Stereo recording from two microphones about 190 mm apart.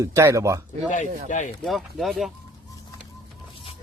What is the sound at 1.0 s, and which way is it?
Speech, 45° right (ahead or behind).